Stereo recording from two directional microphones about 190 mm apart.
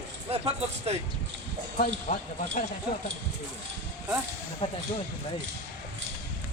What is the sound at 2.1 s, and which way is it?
Speech, 40° left (ahead or behind).